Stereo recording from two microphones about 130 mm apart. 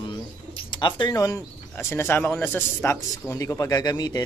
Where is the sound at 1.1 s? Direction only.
25° left (ahead or behind).